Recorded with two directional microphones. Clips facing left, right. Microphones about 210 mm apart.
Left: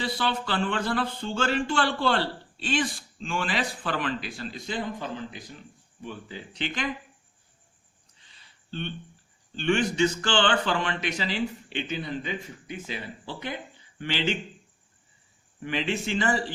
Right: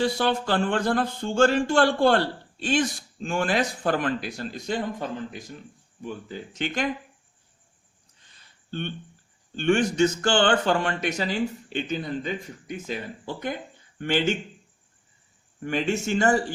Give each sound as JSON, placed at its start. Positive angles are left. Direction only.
{"t": 0.0, "sound": "speech", "side_deg": -45}
{"t": 8.3, "sound": "a sound", "side_deg": -50}
{"t": 9.6, "sound": "speech", "side_deg": -45}
{"t": 15.6, "sound": "speech", "side_deg": -45}